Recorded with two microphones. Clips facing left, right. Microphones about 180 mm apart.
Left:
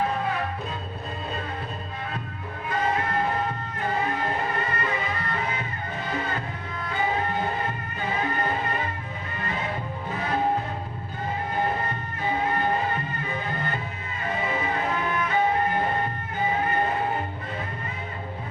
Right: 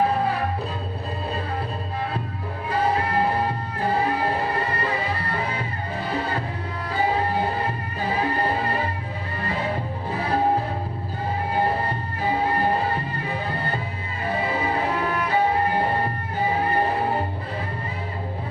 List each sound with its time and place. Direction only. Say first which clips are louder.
0.1 s music: right 4 dB; 35° right (ahead or behind)
2.6 s music: right 3 dB; 35° right (ahead or behind)
11.5 s music: right 4 dB; 35° right (ahead or behind)